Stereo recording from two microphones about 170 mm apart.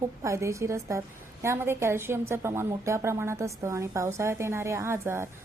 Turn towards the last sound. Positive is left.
turn(degrees=-15)  # may be behind; listen again after turning